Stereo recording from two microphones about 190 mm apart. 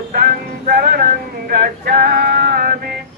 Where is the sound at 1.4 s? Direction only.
50° right (ahead or behind).